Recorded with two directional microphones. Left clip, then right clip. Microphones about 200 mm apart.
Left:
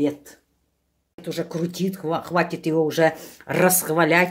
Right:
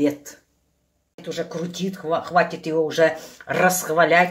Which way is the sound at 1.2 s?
50° left (ahead or behind).